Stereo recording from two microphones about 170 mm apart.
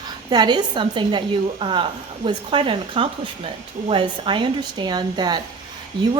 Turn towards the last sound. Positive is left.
turn(degrees=-25)  # may be behind; listen again after turning